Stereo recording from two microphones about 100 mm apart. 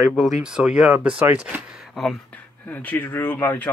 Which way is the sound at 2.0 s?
Centre (ahead or behind).